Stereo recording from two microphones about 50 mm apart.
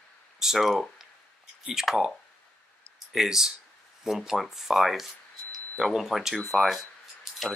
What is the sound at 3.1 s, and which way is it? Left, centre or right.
Speech, centre.